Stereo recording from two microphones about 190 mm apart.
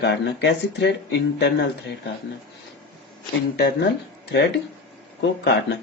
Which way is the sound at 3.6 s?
65° left (ahead or behind).